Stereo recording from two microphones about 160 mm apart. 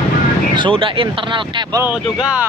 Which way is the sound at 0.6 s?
30° right (ahead or behind).